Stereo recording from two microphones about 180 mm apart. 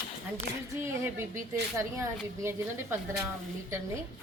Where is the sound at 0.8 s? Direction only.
15° right (ahead or behind).